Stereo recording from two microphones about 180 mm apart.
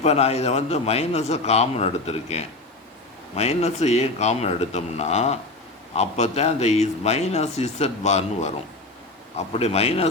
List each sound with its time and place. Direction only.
0.0 s a man's voice: 35° left (ahead or behind)